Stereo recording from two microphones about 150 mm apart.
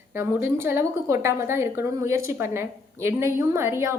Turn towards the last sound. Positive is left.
turn(degrees=-15)  # may be behind; listen again after turning